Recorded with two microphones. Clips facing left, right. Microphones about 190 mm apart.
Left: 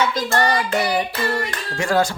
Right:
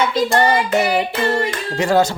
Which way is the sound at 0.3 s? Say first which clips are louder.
Right 4 dB; 20° right (ahead or behind).